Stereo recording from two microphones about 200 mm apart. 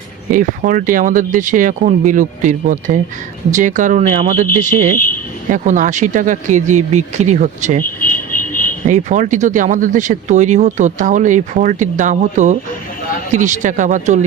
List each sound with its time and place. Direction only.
0.3 s speech: 40° right (ahead or behind)
7.9 s a sound: 45° left (ahead or behind)
8.9 s speech: 40° right (ahead or behind)